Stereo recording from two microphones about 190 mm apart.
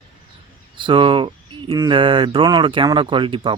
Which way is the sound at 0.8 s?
25° right (ahead or behind).